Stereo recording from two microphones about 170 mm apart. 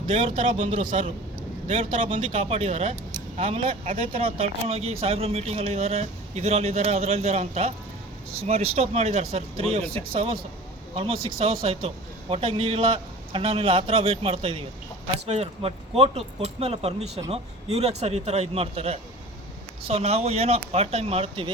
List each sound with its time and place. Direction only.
0.1 s speech: 30° right (ahead or behind)